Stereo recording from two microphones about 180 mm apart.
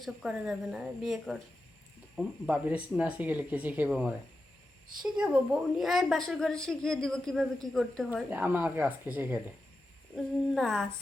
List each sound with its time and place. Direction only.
0.0 s a woman's voice: centre (ahead or behind)
8.1 s a woman's voice: 10° right (ahead or behind)
10.2 s a woman's voice: centre (ahead or behind)